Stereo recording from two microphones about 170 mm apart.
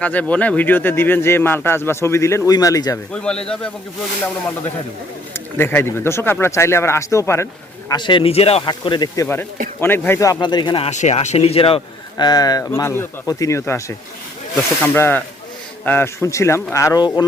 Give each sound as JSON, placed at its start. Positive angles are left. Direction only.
{"t": 0.0, "sound": "speech", "side_deg": 10}
{"t": 3.1, "sound": "speech", "side_deg": 5}
{"t": 5.3, "sound": "speech", "side_deg": 15}
{"t": 7.9, "sound": "speech", "side_deg": 25}
{"t": 9.2, "sound": "speech", "side_deg": 15}
{"t": 10.9, "sound": "speech", "side_deg": 45}
{"t": 12.1, "sound": "speech", "side_deg": 25}
{"t": 14.9, "sound": "speech", "side_deg": 15}